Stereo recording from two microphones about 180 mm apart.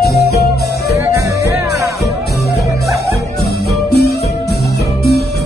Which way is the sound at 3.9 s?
65° left (ahead or behind).